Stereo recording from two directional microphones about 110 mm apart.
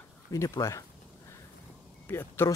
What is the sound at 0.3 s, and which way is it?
Speech, 30° left (ahead or behind).